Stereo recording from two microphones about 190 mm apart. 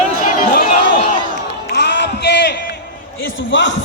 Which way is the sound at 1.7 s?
65° left (ahead or behind).